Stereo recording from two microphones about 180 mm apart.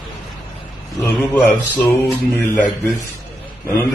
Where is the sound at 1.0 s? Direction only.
10° left (ahead or behind).